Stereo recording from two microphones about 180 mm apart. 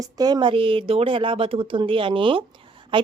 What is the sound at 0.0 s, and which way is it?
A woman's voice, 20° right (ahead or behind).